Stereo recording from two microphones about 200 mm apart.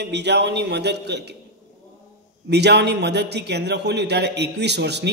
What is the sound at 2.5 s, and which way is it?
A man's voice, 55° right (ahead or behind).